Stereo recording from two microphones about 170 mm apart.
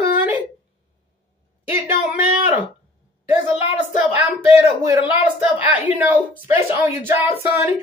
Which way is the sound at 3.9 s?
45° left (ahead or behind).